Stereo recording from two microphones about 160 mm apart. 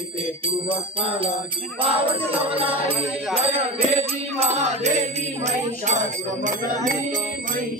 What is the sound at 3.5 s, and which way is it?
Music, 40° right (ahead or behind).